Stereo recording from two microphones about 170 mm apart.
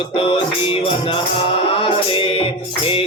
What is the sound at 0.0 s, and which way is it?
Music, 35° left (ahead or behind).